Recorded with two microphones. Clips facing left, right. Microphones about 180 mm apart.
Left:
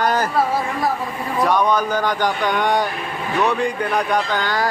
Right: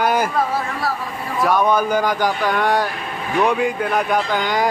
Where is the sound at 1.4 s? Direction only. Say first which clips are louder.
Right 1 dB; 5° right (ahead or behind).